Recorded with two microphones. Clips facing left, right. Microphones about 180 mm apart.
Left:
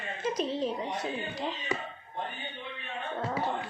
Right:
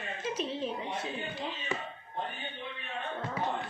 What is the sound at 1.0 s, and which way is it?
Speech, 40° left (ahead or behind).